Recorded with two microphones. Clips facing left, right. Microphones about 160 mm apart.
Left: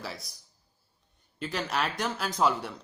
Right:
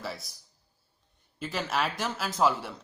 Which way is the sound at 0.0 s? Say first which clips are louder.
Right 2 dB; centre (ahead or behind).